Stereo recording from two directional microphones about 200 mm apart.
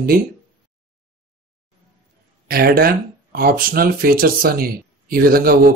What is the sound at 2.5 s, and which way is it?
Speech, 50° right (ahead or behind).